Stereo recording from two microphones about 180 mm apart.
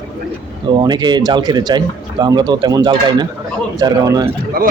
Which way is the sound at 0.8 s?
25° right (ahead or behind).